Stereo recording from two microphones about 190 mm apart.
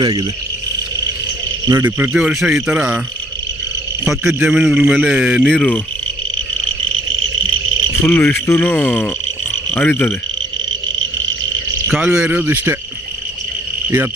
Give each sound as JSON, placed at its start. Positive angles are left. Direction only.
{"t": 0.0, "sound": "speech", "side_deg": -20}
{"t": 1.7, "sound": "a man's voice", "side_deg": -10}
{"t": 4.0, "sound": "a man's voice", "side_deg": 0}
{"t": 8.0, "sound": "a man's voice", "side_deg": 10}
{"t": 11.9, "sound": "speech", "side_deg": -5}